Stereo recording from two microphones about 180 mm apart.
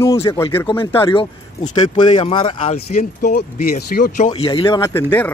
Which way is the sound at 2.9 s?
50° left (ahead or behind).